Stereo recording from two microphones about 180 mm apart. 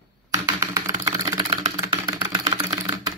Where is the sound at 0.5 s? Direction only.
20° right (ahead or behind).